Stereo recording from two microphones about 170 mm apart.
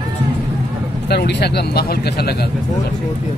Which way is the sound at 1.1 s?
75° left (ahead or behind).